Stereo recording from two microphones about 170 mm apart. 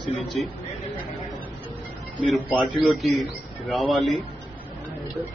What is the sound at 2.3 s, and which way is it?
A man's voice, centre (ahead or behind).